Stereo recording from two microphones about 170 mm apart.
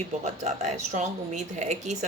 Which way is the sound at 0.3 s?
45° right (ahead or behind).